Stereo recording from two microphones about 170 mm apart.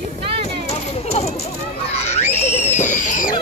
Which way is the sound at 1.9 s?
40° left (ahead or behind).